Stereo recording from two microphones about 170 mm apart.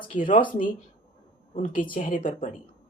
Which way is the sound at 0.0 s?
55° left (ahead or behind).